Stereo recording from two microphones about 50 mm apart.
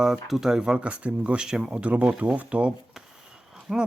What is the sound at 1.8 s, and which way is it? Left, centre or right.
Speech, right.